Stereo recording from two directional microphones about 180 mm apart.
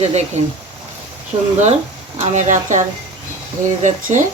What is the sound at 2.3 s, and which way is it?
Speech, 40° right (ahead or behind).